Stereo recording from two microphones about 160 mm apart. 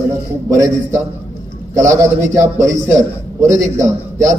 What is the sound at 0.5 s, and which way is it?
A man's voice, 20° right (ahead or behind).